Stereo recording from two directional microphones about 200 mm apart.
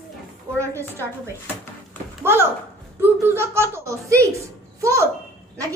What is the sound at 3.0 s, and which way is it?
Speech, 10° right (ahead or behind).